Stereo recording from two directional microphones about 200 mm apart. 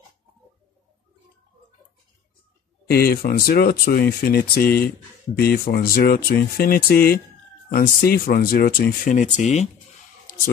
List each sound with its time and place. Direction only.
2.9 s speech: 50° left (ahead or behind)